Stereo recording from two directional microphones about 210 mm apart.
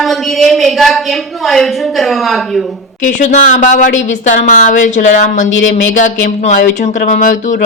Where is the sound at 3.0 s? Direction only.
35° left (ahead or behind).